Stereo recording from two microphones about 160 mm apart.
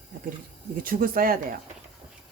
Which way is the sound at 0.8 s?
65° right (ahead or behind).